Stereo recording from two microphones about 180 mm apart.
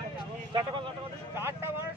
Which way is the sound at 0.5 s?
25° right (ahead or behind).